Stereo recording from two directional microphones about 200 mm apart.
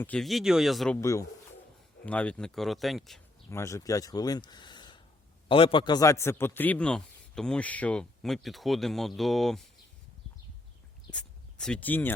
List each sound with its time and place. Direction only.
0.0 s a man's voice: 5° left (ahead or behind)
0.9 s a man's voice: 15° left (ahead or behind)
3.5 s a man's voice: 15° left (ahead or behind)
11.1 s speech: 5° left (ahead or behind)